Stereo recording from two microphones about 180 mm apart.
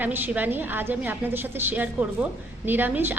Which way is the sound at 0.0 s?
10° right (ahead or behind).